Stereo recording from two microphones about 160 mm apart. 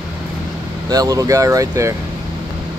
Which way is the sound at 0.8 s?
20° right (ahead or behind).